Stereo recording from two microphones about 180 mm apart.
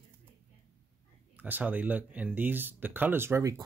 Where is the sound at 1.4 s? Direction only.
10° right (ahead or behind).